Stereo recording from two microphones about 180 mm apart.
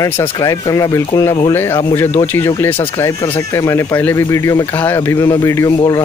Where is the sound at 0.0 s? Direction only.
20° left (ahead or behind).